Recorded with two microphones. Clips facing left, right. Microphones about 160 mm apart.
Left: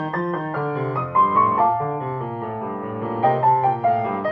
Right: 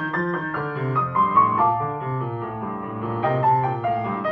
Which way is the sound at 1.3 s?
40° left (ahead or behind).